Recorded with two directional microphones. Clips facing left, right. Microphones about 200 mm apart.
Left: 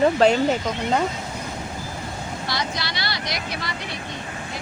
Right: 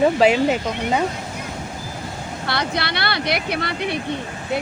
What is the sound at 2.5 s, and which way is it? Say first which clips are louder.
Speech: right 6 dB; 60° right (ahead or behind).